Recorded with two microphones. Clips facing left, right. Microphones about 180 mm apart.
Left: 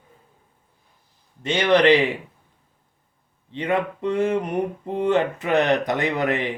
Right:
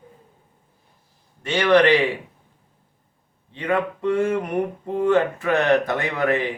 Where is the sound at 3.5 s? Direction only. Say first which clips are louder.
Even; 20° left (ahead or behind).